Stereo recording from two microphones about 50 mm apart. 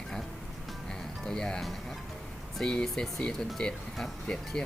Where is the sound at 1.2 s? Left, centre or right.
Centre.